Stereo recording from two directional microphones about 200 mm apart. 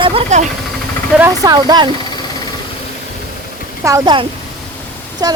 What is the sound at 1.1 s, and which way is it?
Speech, 15° right (ahead or behind).